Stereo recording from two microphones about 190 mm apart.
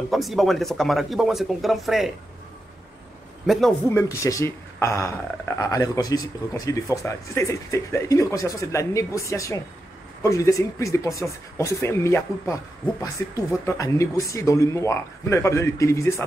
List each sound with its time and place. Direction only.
0.1 s speech: centre (ahead or behind)
3.4 s speech: centre (ahead or behind)
4.1 s a man's voice: 15° left (ahead or behind)